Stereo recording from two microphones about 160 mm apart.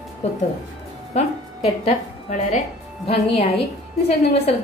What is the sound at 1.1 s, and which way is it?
A woman's voice, 40° left (ahead or behind).